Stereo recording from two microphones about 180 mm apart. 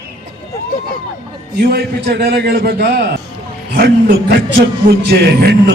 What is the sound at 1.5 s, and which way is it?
Speech, 60° right (ahead or behind).